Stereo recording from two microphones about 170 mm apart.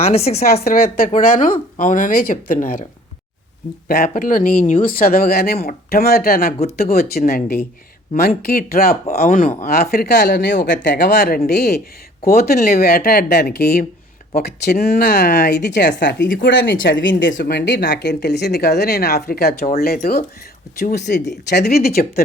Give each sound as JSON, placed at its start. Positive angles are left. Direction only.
{"t": 0.0, "sound": "a woman's voice", "side_deg": 35}
{"t": 0.6, "sound": "speech", "side_deg": 60}
{"t": 3.8, "sound": "speech", "side_deg": 65}
{"t": 17.5, "sound": "speech", "side_deg": 75}